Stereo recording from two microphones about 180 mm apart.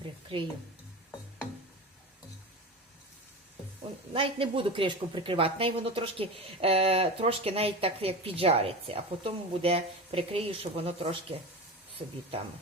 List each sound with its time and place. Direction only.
0.0 s music: 30° right (ahead or behind)
4.1 s speech: 30° right (ahead or behind)